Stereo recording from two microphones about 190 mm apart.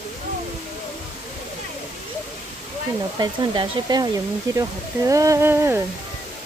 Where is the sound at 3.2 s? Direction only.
20° right (ahead or behind).